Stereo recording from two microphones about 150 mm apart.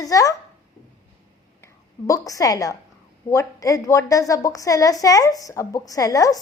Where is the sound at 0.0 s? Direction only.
25° left (ahead or behind).